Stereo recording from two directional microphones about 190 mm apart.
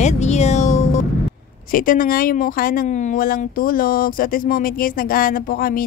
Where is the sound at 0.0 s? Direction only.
35° left (ahead or behind).